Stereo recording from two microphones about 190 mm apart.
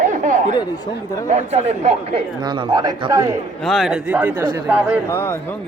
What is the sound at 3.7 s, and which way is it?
A man's voice, centre (ahead or behind).